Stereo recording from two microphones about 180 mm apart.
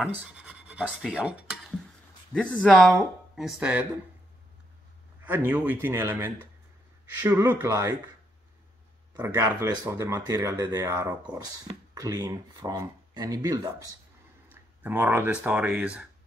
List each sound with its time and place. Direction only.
0.0 s speech: 5° right (ahead or behind)
5.2 s a man's voice: 10° right (ahead or behind)
9.1 s speech: 10° right (ahead or behind)
14.5 s a sound: 10° right (ahead or behind)
15.4 s a man's voice: 10° right (ahead or behind)